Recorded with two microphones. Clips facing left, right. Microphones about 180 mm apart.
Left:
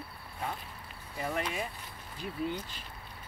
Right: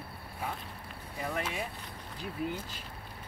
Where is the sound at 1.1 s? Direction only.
Centre (ahead or behind).